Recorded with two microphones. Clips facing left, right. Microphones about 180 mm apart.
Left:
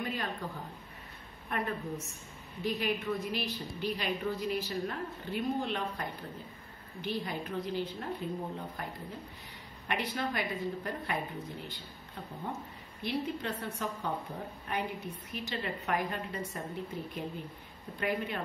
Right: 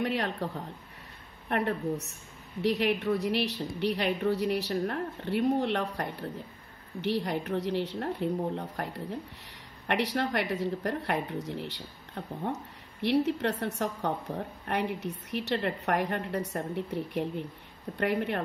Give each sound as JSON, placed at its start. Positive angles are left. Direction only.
{"t": 0.0, "sound": "a woman's voice", "side_deg": -75}
{"t": 13.0, "sound": "a woman's voice", "side_deg": -75}